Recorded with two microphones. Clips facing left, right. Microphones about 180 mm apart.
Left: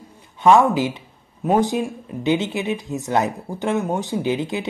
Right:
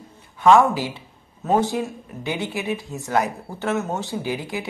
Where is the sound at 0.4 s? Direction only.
20° left (ahead or behind).